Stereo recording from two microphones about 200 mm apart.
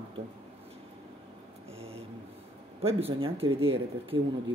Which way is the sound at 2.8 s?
30° right (ahead or behind).